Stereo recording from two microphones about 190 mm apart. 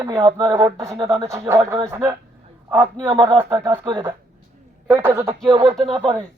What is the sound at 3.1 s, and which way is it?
Speech, 30° right (ahead or behind).